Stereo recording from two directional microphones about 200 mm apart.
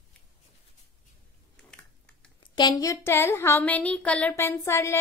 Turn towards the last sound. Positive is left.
turn(degrees=15)  # may be behind; listen again after turning